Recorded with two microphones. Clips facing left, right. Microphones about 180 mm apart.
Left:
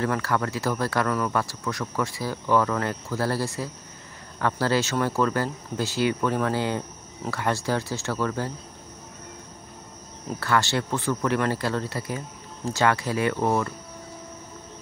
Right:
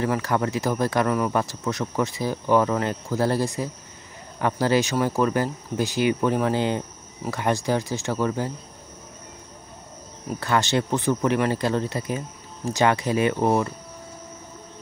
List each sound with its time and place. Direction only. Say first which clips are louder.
0.0 s speech: right 2 dB; 15° right (ahead or behind)
10.4 s speech: right 2 dB; 20° right (ahead or behind)